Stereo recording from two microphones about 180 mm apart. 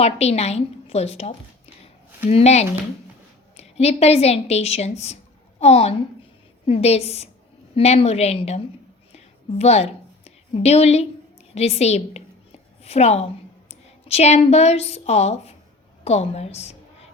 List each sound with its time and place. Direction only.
0.0 s a woman's voice: 35° left (ahead or behind)
9.1 s a sound: 35° left (ahead or behind)
11.5 s a woman's voice: 35° left (ahead or behind)